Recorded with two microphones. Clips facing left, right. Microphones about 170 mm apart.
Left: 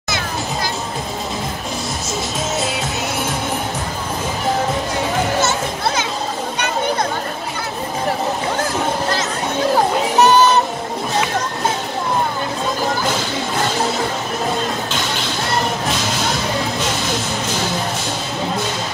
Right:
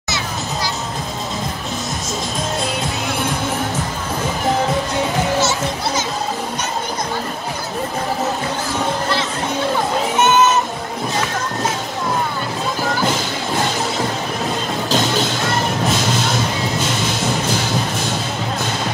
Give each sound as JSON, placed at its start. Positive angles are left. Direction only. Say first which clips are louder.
{"t": 5.4, "sound": "children playing", "louder": "even", "side_deg": 50}
{"t": 10.1, "sound": "music", "louder": "left 2 dB", "side_deg": 35}